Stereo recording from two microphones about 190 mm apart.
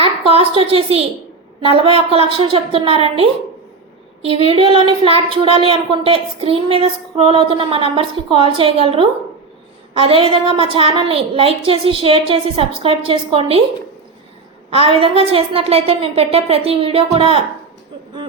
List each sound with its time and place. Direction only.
0.0 s a woman's voice: 30° right (ahead or behind)
14.7 s a woman's voice: 30° right (ahead or behind)